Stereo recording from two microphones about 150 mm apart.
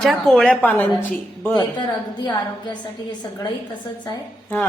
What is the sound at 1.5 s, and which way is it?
Speech, 30° left (ahead or behind).